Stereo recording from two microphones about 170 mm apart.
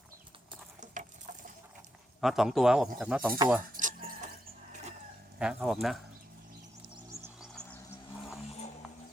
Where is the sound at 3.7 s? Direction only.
50° right (ahead or behind).